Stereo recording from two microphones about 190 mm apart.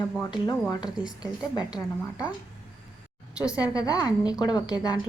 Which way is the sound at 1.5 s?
20° left (ahead or behind).